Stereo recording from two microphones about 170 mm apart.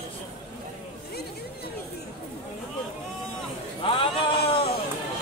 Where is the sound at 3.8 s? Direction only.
30° left (ahead or behind).